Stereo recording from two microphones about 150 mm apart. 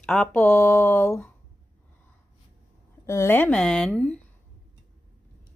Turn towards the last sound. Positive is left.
turn(degrees=5)  # may be behind; listen again after turning